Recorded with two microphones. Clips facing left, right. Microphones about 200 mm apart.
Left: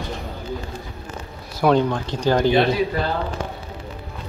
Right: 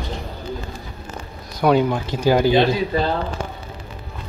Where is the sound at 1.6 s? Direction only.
5° right (ahead or behind).